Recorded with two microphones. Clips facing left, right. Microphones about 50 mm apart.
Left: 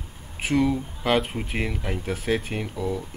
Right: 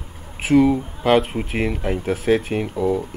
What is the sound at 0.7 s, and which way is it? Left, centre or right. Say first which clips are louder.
Speech: right 6 dB; centre.